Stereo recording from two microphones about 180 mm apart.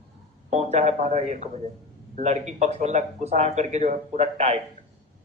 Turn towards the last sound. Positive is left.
turn(degrees=-35)  # may be behind; listen again after turning